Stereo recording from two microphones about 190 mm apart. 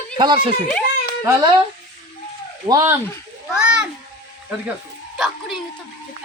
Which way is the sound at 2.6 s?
20° right (ahead or behind).